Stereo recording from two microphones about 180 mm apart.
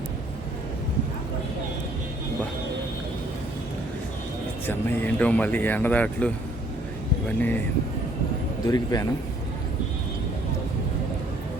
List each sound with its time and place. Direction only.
4.9 s speech: 10° left (ahead or behind)
7.3 s speech: 10° left (ahead or behind)
8.6 s a man's voice: 20° left (ahead or behind)